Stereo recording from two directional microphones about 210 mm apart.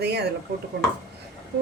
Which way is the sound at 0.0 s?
50° right (ahead or behind).